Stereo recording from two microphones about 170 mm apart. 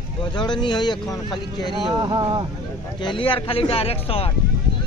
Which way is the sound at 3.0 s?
30° left (ahead or behind).